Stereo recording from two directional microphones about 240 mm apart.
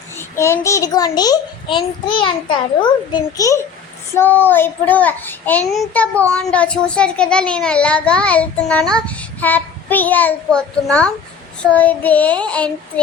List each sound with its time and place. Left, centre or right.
0.2 s a child's voice: centre